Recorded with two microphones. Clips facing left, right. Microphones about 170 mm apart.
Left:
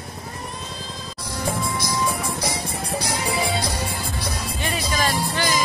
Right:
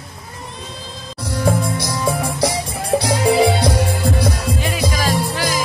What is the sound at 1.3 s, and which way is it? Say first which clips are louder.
Music: right 7 dB; 70° right (ahead or behind).